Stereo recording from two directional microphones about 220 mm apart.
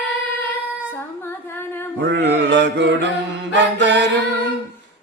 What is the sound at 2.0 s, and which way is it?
Mantra, 50° right (ahead or behind).